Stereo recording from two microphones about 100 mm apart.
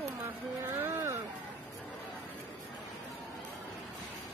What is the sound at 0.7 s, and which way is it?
Speech, 25° right (ahead or behind).